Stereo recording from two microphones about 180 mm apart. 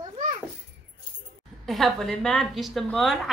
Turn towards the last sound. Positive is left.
turn(degrees=0)  # may be behind; listen again after turning